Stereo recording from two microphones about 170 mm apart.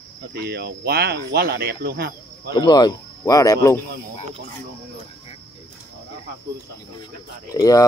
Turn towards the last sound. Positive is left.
turn(degrees=20)  # may be behind; listen again after turning